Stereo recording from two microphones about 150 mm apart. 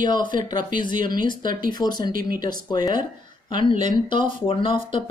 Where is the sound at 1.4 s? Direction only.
65° right (ahead or behind).